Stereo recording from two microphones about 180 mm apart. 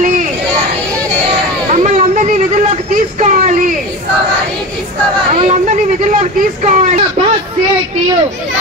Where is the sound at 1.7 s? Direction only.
40° right (ahead or behind).